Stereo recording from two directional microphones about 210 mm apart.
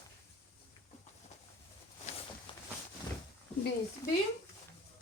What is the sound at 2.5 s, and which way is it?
Walk, 25° left (ahead or behind).